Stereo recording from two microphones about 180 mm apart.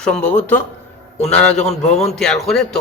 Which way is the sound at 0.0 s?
5° left (ahead or behind).